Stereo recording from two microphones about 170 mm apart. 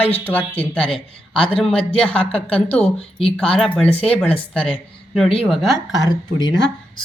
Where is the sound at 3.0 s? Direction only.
35° left (ahead or behind).